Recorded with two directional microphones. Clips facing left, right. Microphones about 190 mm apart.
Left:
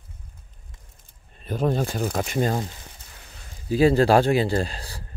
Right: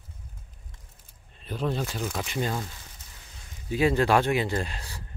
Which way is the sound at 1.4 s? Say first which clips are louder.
Left 6 dB; 45° left (ahead or behind).